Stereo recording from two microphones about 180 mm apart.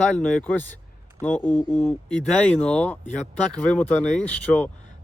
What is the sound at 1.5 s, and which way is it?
Speech, centre (ahead or behind).